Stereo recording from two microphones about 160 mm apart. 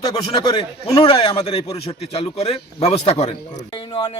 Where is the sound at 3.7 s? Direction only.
30° left (ahead or behind).